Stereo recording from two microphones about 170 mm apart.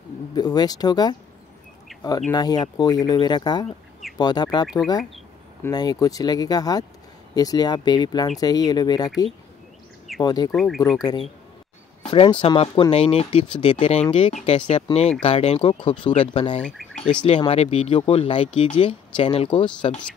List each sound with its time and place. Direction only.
0.3 s speech: 25° left (ahead or behind)
2.3 s speech: 25° left (ahead or behind)
10.5 s speech: centre (ahead or behind)
11.0 s speech: 25° left (ahead or behind)
16.6 s speech: 5° left (ahead or behind)
17.2 s speech: 30° left (ahead or behind)